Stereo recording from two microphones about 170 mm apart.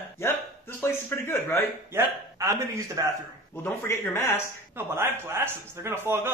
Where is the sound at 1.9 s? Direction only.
20° right (ahead or behind).